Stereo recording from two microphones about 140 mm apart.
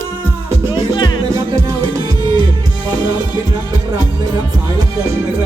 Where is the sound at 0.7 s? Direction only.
35° left (ahead or behind).